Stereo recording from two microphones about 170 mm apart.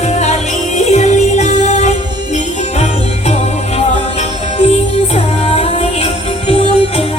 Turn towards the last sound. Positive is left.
turn(degrees=35)  # may be behind; listen again after turning